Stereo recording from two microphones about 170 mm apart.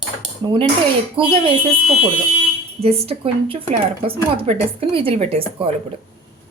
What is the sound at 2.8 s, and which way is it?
A woman's voice, 35° right (ahead or behind).